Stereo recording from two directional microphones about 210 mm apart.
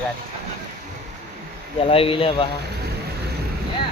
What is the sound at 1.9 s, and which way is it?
Speech, 25° left (ahead or behind).